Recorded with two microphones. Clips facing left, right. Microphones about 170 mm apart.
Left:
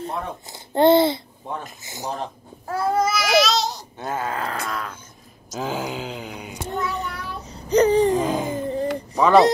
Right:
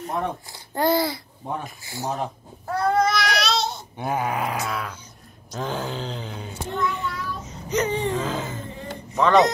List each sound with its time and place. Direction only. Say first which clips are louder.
0.0 s a man's voice: right 2 dB; 25° left (ahead or behind)
2.7 s babbling: right 1 dB; 5° left (ahead or behind)
4.0 s groan: right 2 dB; 15° right (ahead or behind)
4.6 s dog: even; 5° right (ahead or behind)
5.6 s groan: left 1 dB; 10° left (ahead or behind)
6.7 s a sound: right 1 dB; 35° left (ahead or behind)
8.2 s groan: left 5 dB; 15° left (ahead or behind)
8.5 s a sound: left 11 dB; 35° left (ahead or behind)
9.1 s speech: left 2 dB; 10° left (ahead or behind)